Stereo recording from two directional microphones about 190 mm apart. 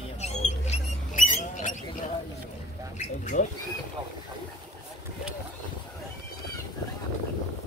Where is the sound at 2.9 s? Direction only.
40° left (ahead or behind).